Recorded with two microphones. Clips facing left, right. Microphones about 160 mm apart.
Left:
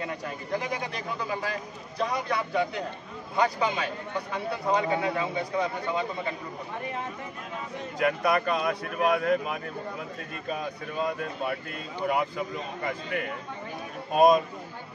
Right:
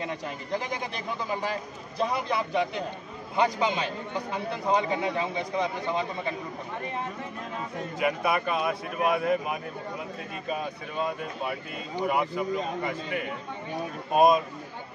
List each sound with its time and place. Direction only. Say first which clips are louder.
2.0 s a man's voice: right 1 dB; 25° right (ahead or behind)
8.0 s speech: left 2 dB; 5° right (ahead or behind)